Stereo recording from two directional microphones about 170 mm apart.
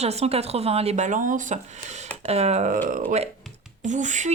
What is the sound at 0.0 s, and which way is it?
Speech, 40° right (ahead or behind).